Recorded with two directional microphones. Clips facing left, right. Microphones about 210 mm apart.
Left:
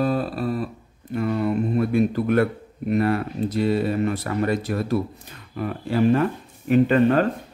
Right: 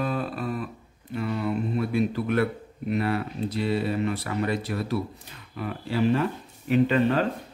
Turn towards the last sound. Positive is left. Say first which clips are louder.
# left 4 dB
turn(degrees=50)  # may be behind; listen again after turning